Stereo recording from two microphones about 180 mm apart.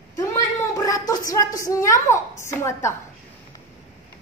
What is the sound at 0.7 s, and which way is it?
Child singing, 20° left (ahead or behind).